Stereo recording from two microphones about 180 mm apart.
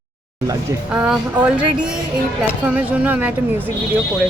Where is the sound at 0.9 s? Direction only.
5° right (ahead or behind).